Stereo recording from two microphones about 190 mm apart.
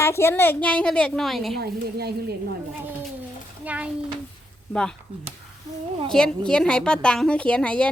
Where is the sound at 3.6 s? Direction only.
5° right (ahead or behind).